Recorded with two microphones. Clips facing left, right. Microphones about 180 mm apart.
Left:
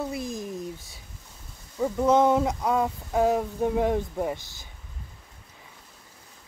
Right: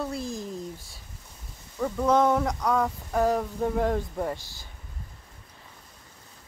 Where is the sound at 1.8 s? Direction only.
20° left (ahead or behind).